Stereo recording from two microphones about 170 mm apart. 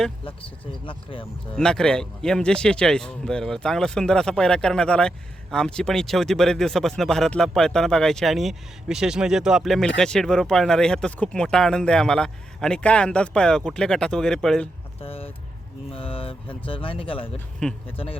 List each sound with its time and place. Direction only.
0.3 s speech: 30° left (ahead or behind)
1.5 s speech: 5° left (ahead or behind)
15.0 s a sound: 35° left (ahead or behind)
15.9 s speech: 35° left (ahead or behind)
17.6 s speech: 5° left (ahead or behind)
17.9 s speech: 35° left (ahead or behind)